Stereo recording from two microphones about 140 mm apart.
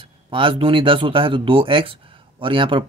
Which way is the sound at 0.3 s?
40° right (ahead or behind).